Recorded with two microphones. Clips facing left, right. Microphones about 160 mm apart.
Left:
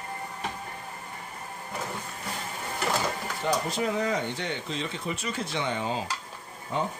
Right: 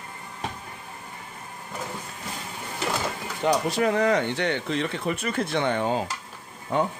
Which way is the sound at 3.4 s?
70° right (ahead or behind).